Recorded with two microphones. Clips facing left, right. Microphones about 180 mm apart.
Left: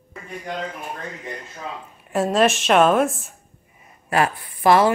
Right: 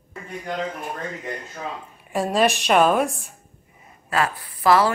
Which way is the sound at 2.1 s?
Centre (ahead or behind).